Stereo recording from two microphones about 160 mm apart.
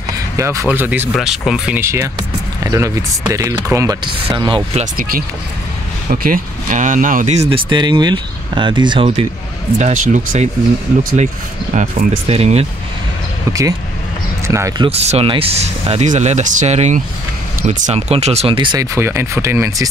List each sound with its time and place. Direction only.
0.4 s speech: 20° right (ahead or behind); by 1.8 s centre (ahead or behind)
1.8 s speech: 15° right (ahead or behind)
6.1 s speech: 60° right (ahead or behind); by 9.2 s 35° right (ahead or behind)
9.8 s speech: 45° right (ahead or behind)
11.7 s speech: 50° right (ahead or behind)
13.5 s speech: 20° right (ahead or behind)
14.8 s speech: 40° right (ahead or behind)
18.9 s speech: 15° right (ahead or behind)